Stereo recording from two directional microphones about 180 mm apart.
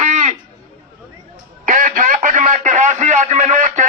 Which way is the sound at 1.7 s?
45° right (ahead or behind).